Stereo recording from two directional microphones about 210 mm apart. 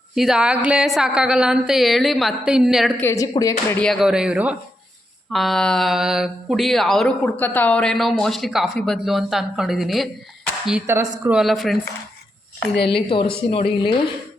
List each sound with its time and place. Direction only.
0.2 s speech: 5° right (ahead or behind)
3.0 s a woman's voice: 15° left (ahead or behind)
3.7 s speech: 5° left (ahead or behind)
12.7 s a woman's voice: 50° left (ahead or behind)
13.5 s speech: 25° left (ahead or behind)